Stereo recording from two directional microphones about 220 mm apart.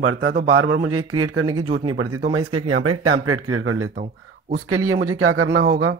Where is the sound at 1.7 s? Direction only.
20° right (ahead or behind).